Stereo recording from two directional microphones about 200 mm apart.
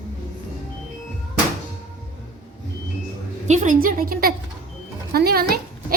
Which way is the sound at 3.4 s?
35° right (ahead or behind).